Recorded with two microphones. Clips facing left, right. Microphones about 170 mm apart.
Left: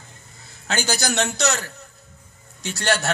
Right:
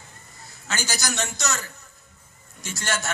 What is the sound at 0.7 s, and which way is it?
A man's voice, 60° left (ahead or behind).